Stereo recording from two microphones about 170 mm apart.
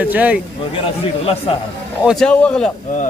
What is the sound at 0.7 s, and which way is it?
Speech, 35° left (ahead or behind).